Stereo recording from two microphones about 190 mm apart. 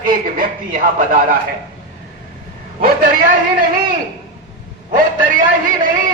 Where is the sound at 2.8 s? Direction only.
50° right (ahead or behind).